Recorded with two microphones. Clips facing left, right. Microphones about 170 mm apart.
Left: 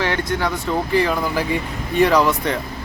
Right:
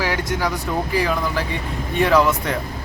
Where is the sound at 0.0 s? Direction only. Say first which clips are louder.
Left 1 dB; 5° right (ahead or behind).